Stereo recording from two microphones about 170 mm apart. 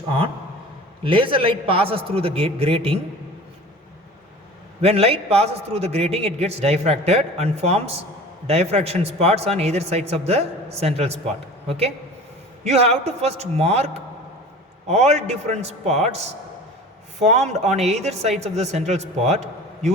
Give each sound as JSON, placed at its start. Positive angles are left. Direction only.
{"t": 1.0, "sound": "a man's voice", "side_deg": -30}
{"t": 4.8, "sound": "a man's voice", "side_deg": -35}
{"t": 12.6, "sound": "a man's voice", "side_deg": -40}